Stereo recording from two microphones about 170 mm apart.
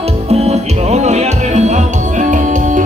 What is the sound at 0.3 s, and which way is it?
Music, 40° right (ahead or behind).